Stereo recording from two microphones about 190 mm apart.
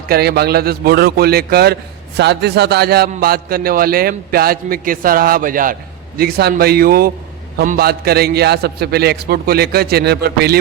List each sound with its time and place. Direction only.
0.1 s a man's voice: 55° right (ahead or behind)